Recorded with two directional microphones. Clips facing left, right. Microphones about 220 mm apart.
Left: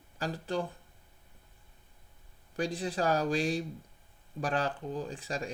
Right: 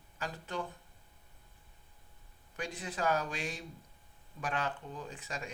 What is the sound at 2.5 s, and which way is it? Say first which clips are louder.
Speech: left 8 dB; 35° left (ahead or behind).